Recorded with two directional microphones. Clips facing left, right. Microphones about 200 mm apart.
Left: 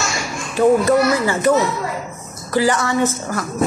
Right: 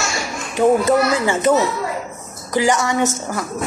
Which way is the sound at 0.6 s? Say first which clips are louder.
Left 1 dB; 20° right (ahead or behind).